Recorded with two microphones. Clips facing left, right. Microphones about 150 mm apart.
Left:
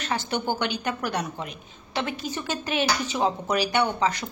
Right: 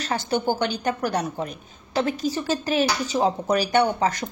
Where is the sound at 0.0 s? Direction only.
40° right (ahead or behind).